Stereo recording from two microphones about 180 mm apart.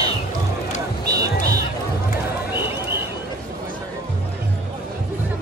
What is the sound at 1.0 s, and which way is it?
Music, 20° right (ahead or behind).